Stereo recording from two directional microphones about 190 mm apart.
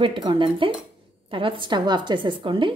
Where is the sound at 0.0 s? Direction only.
25° right (ahead or behind).